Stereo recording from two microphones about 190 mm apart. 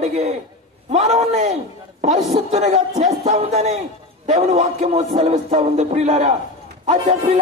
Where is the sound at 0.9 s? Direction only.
35° right (ahead or behind).